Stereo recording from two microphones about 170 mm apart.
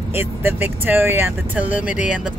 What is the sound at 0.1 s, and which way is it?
Speech, 15° right (ahead or behind).